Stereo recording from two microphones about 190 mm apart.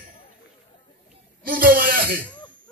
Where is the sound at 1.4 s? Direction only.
50° right (ahead or behind).